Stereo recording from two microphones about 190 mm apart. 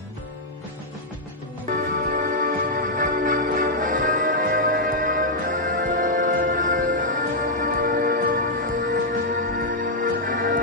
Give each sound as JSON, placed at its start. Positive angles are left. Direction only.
{"t": 1.7, "sound": "music", "side_deg": -50}